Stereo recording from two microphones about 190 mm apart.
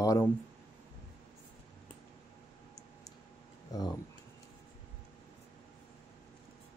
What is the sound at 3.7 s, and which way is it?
Speech, 20° left (ahead or behind).